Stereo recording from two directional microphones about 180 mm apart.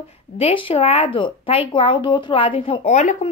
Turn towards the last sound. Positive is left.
turn(degrees=40)  # may be behind; listen again after turning